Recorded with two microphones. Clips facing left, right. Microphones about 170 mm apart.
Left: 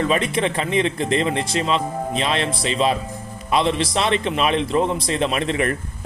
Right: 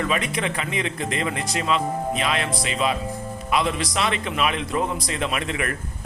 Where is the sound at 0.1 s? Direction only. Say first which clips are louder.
Left 5 dB; 30° left (ahead or behind).